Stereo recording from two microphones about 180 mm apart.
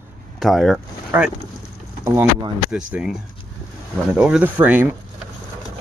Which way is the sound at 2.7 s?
5° right (ahead or behind).